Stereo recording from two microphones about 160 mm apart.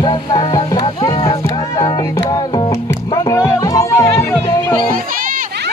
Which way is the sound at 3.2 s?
20° left (ahead or behind).